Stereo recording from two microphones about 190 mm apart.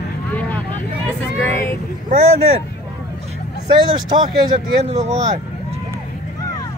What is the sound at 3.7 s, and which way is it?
Speech, 25° right (ahead or behind).